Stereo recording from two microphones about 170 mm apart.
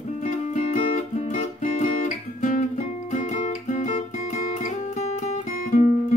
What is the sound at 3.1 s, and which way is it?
Guitar, 45° left (ahead or behind).